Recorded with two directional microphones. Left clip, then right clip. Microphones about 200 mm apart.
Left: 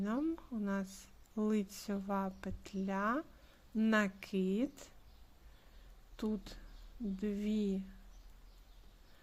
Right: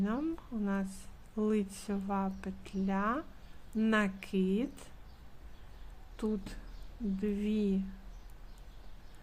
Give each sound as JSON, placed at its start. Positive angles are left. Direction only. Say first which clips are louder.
{"t": 0.0, "sound": "speech", "louder": "right 2 dB", "side_deg": 20}
{"t": 6.1, "sound": "a woman's voice", "louder": "right 4 dB", "side_deg": 15}